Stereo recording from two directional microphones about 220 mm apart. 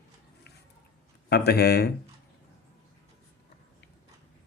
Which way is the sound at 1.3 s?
45° left (ahead or behind).